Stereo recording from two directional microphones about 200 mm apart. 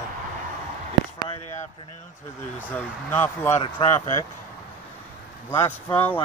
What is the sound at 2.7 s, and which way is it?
Speech, 10° left (ahead or behind).